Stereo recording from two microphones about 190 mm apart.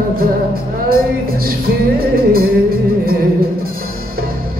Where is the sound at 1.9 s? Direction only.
50° right (ahead or behind).